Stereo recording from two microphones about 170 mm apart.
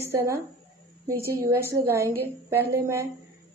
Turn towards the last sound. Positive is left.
turn(degrees=-15)  # may be behind; listen again after turning